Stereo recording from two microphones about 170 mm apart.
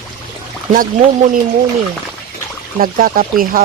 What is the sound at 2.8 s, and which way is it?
Speech, 55° right (ahead or behind).